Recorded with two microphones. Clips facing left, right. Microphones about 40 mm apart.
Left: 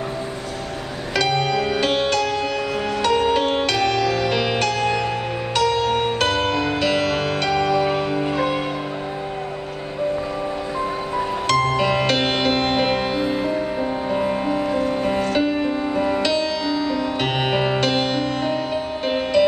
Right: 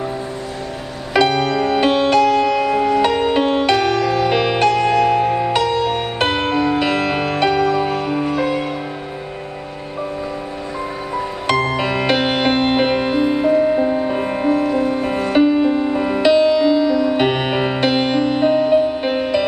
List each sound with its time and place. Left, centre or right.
1.1 s music: centre
8.3 s music: centre
11.4 s music: centre